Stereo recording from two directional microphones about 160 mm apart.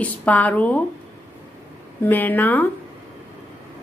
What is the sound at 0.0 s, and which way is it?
Speech, 10° left (ahead or behind).